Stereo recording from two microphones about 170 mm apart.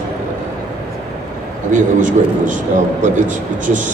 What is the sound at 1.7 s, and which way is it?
A man's voice, 50° right (ahead or behind).